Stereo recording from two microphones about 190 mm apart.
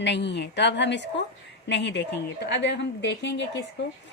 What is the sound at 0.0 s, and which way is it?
A woman's voice, 65° left (ahead or behind).